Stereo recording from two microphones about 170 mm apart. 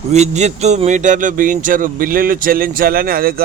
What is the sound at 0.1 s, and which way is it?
A man's voice, 40° right (ahead or behind).